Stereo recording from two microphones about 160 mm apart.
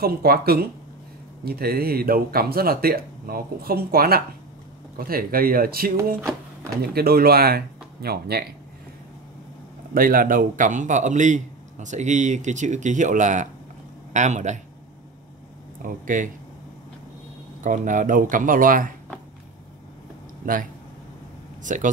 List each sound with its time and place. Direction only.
0.0 s speech: 70° right (ahead or behind)
9.9 s a man's voice: 60° right (ahead or behind)
15.8 s speech: 55° right (ahead or behind)
17.6 s speech: 55° right (ahead or behind)
20.4 s speech: 60° right (ahead or behind)
21.6 s a man's voice: 50° right (ahead or behind)